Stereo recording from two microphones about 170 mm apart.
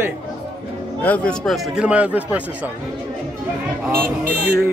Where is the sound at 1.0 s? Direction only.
10° left (ahead or behind); by 2.7 s 10° right (ahead or behind).